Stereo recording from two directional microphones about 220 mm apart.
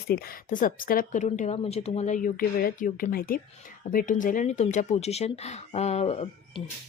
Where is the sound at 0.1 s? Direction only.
40° left (ahead or behind).